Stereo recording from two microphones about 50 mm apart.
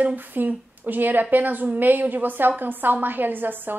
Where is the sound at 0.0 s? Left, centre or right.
Right.